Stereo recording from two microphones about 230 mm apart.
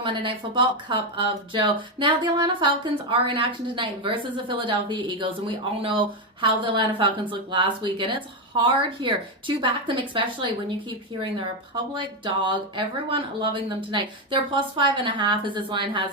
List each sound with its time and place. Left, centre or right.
0.0 s a woman's voice: right